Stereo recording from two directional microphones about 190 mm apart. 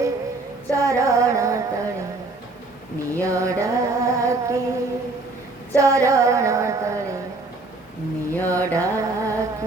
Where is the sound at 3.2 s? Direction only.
15° right (ahead or behind).